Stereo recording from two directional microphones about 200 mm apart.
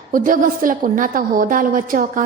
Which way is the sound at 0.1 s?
45° right (ahead or behind).